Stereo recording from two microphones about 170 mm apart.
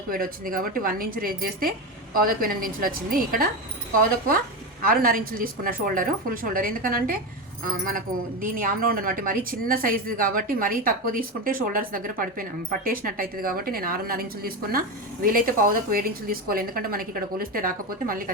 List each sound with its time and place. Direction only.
0.1 s speech: 55° right (ahead or behind)
4.8 s speech: 55° right (ahead or behind)